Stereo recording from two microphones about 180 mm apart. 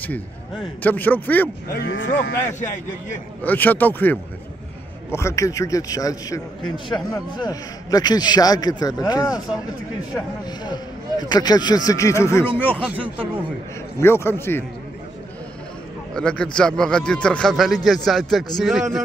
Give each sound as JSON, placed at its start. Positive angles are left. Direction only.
{"t": 0.8, "sound": "a man's voice", "side_deg": 10}
{"t": 1.7, "sound": "speech", "side_deg": 60}
{"t": 3.4, "sound": "a man's voice", "side_deg": 10}
{"t": 13.9, "sound": "a man's voice", "side_deg": 15}
{"t": 16.2, "sound": "a man's voice", "side_deg": 5}